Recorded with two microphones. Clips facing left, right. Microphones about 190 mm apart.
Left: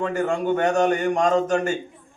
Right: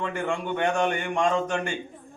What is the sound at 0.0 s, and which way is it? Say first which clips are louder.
A man's voice: left 6 dB; 40° left (ahead or behind).